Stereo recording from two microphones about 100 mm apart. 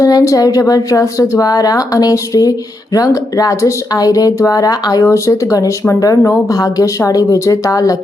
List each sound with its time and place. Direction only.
0.0 s speech: 35° left (ahead or behind)